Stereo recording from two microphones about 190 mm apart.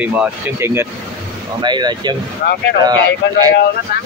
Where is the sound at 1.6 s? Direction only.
25° right (ahead or behind).